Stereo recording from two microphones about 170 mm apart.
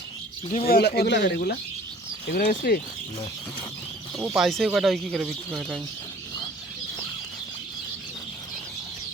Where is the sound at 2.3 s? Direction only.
50° left (ahead or behind).